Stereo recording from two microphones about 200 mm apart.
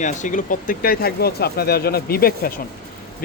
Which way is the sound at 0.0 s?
40° left (ahead or behind).